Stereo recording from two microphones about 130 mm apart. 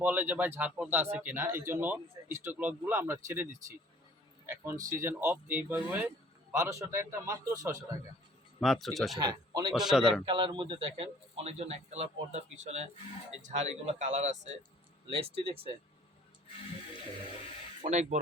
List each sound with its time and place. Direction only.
0.0 s a man's voice: 15° right (ahead or behind)
8.6 s speech: centre (ahead or behind)
9.1 s speech: 30° right (ahead or behind)
9.7 s speech: 5° right (ahead or behind)
10.2 s a man's voice: 40° right (ahead or behind); by 14.6 s 60° right (ahead or behind)
15.0 s speech: 45° right (ahead or behind)
17.8 s speech: 65° right (ahead or behind)